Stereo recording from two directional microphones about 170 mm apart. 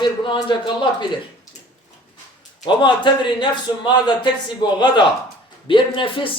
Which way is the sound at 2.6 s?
25° left (ahead or behind).